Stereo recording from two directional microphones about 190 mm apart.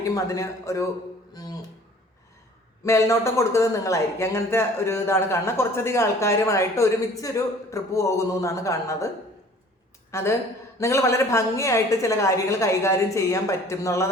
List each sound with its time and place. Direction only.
0.0 s speech: 15° left (ahead or behind)
2.8 s speech: 15° left (ahead or behind)
10.1 s a woman's voice: 15° left (ahead or behind)